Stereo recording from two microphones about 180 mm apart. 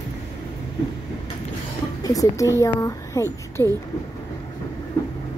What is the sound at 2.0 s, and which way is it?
Speech, 20° left (ahead or behind).